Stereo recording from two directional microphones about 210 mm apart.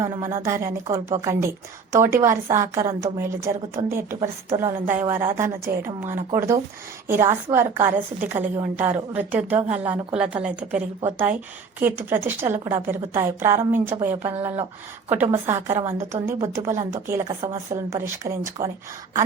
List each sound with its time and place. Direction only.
0.0 s a woman's voice: 10° right (ahead or behind)